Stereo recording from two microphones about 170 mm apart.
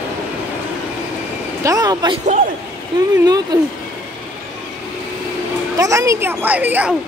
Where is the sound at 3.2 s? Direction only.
25° right (ahead or behind).